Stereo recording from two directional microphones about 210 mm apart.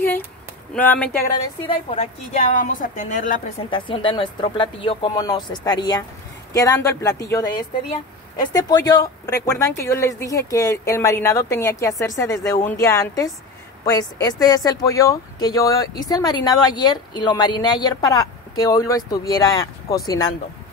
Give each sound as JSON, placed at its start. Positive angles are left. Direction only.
{"t": 0.7, "sound": "speech", "side_deg": 5}
{"t": 1.7, "sound": "a woman's voice", "side_deg": 30}
{"t": 3.7, "sound": "speech", "side_deg": 25}